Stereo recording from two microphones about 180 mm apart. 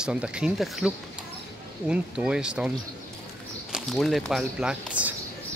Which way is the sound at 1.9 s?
5° right (ahead or behind).